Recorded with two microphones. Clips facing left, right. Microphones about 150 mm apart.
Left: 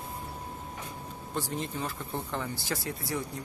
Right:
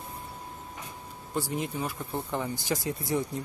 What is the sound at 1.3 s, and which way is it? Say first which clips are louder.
Speech: right 3 dB; 10° right (ahead or behind).